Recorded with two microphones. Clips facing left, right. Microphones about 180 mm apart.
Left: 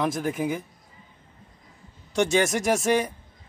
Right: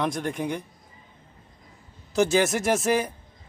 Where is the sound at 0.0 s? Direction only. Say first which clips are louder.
Left 2 dB; centre (ahead or behind).